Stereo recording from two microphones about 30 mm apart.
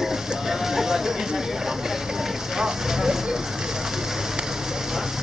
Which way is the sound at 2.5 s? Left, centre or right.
Centre.